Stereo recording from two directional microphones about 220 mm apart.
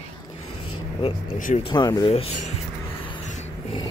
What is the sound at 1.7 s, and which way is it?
Speech, 20° left (ahead or behind).